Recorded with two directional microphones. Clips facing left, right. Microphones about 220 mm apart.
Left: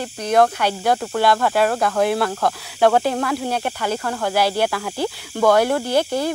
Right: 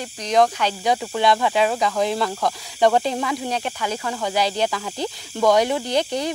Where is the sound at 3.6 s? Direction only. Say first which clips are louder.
Left 3 dB; 55° left (ahead or behind).